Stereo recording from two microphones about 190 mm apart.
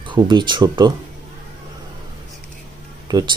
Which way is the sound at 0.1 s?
25° right (ahead or behind).